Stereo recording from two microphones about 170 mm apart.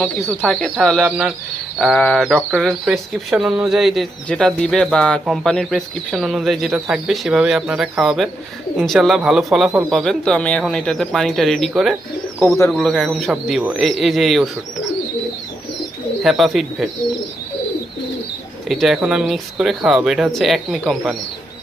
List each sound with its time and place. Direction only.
0.0 s speech: centre (ahead or behind)
13.3 s speech: 10° right (ahead or behind)
16.2 s speech: centre (ahead or behind)
18.7 s speech: centre (ahead or behind)